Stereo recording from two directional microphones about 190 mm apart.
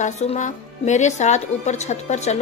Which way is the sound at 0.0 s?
40° left (ahead or behind).